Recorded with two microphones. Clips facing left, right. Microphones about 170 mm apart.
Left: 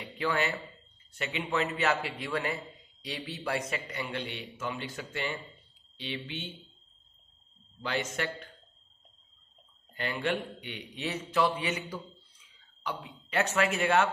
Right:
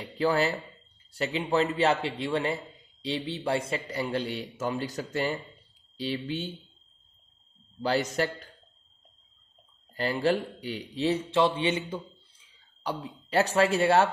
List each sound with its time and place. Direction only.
0.0 s a man's voice: 35° right (ahead or behind)
7.8 s a man's voice: 35° right (ahead or behind)
9.9 s a man's voice: 35° right (ahead or behind)